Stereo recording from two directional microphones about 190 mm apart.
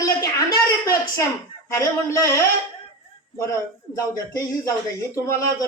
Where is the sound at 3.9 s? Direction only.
15° left (ahead or behind).